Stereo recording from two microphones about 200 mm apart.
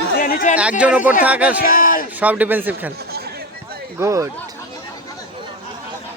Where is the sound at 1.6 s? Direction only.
45° left (ahead or behind).